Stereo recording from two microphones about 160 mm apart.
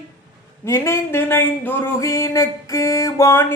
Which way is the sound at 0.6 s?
15° left (ahead or behind).